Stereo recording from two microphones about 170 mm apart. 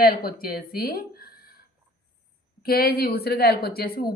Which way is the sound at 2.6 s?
65° left (ahead or behind).